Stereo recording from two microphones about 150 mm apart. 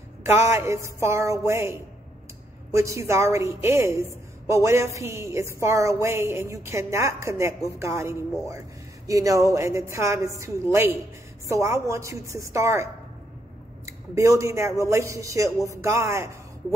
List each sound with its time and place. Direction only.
0.2 s a woman's voice: 15° right (ahead or behind)
13.8 s a woman's voice: 20° right (ahead or behind)